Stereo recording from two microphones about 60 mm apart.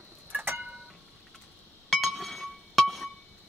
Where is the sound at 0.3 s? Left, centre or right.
Right.